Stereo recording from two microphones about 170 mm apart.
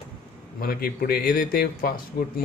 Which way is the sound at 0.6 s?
60° left (ahead or behind).